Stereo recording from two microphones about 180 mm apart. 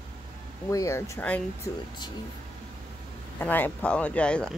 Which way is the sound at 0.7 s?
15° left (ahead or behind).